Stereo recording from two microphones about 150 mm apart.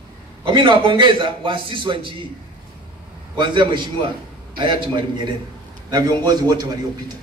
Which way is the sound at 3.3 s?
30° right (ahead or behind).